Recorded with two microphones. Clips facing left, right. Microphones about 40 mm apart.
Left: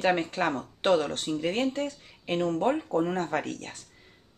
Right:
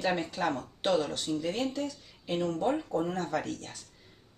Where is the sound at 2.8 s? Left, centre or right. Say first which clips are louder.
Left 4 dB; centre.